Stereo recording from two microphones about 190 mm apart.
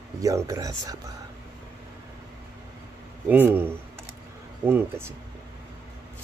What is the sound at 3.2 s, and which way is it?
Speech, 10° right (ahead or behind).